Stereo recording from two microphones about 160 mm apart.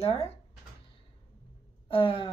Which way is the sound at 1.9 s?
35° left (ahead or behind).